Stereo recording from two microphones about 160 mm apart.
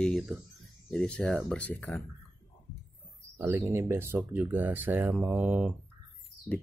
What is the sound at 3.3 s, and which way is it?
Speech, 15° right (ahead or behind).